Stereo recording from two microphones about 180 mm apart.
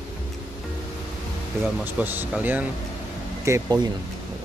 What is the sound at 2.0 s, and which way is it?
Speech, 10° right (ahead or behind).